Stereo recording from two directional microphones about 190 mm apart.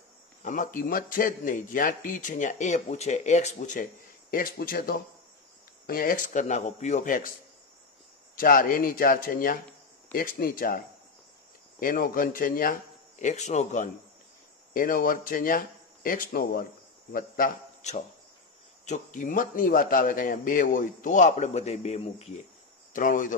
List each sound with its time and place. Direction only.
0.4 s a man's voice: 45° left (ahead or behind)
8.4 s a man's voice: 45° left (ahead or behind)
11.8 s a man's voice: 50° left (ahead or behind)
22.9 s a man's voice: 45° left (ahead or behind)